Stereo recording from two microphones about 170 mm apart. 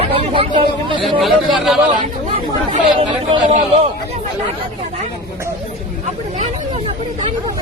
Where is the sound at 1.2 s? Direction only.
Centre (ahead or behind).